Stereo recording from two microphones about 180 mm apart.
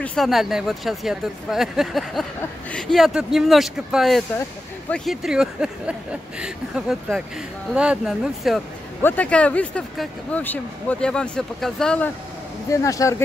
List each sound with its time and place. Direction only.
0.0 s speech: centre (ahead or behind)
9.0 s speech: 10° left (ahead or behind)
12.7 s speech: 20° left (ahead or behind)